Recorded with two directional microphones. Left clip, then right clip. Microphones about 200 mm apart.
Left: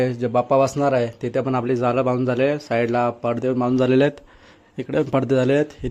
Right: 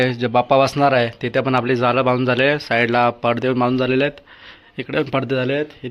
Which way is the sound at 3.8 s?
20° left (ahead or behind).